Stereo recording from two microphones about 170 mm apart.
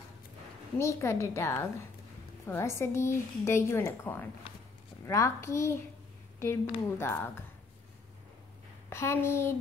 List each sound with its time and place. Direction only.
0.7 s a woman's voice: 15° left (ahead or behind)
8.9 s a woman's voice: 15° left (ahead or behind)